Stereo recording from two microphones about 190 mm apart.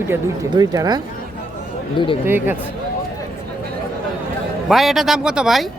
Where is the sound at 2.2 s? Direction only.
10° right (ahead or behind).